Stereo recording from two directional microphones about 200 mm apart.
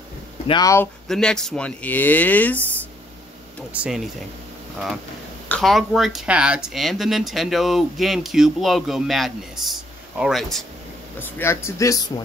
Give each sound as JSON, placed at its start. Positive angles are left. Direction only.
{"t": 0.5, "sound": "speech", "side_deg": 15}
{"t": 1.0, "sound": "speech", "side_deg": 5}
{"t": 3.7, "sound": "speech", "side_deg": -5}
{"t": 5.5, "sound": "speech", "side_deg": 0}
{"t": 11.1, "sound": "speech", "side_deg": 10}